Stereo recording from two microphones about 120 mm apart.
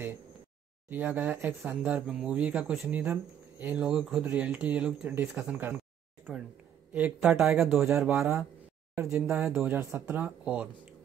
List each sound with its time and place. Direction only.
0.8 s speech: 15° right (ahead or behind)
2.9 s speech: 15° right (ahead or behind)
7.2 s speech: centre (ahead or behind)
8.9 s speech: 20° right (ahead or behind)
10.0 s speech: 15° right (ahead or behind)